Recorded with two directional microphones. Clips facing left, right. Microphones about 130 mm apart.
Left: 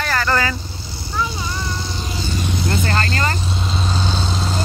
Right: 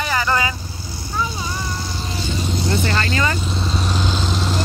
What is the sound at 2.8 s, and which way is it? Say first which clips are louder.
Vehicle: even; 40° left (ahead or behind).